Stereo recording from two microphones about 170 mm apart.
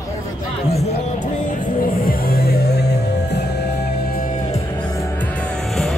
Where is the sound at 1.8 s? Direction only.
55° left (ahead or behind); by 3.4 s 75° left (ahead or behind).